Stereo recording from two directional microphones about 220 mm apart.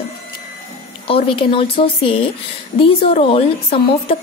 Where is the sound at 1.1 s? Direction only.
25° left (ahead or behind).